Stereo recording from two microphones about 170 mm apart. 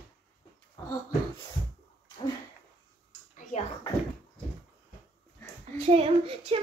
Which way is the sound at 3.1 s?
50° left (ahead or behind).